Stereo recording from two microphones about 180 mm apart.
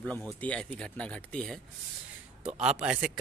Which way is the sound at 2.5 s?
40° right (ahead or behind).